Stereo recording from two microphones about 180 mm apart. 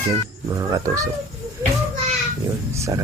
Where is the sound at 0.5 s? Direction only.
15° right (ahead or behind).